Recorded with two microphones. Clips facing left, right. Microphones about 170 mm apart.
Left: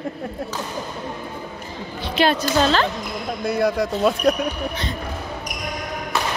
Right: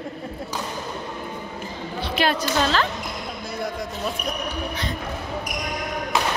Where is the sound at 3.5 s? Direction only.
75° left (ahead or behind).